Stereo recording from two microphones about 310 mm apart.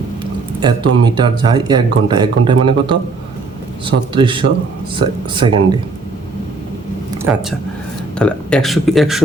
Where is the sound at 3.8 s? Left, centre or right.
Centre.